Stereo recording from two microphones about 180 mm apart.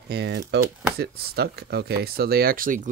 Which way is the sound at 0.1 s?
70° right (ahead or behind).